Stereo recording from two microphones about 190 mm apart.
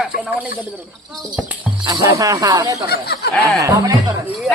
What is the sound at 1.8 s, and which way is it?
Speech, 20° right (ahead or behind).